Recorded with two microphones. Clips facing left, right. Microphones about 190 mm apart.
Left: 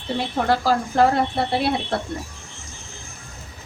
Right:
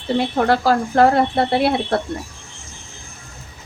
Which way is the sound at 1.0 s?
60° right (ahead or behind).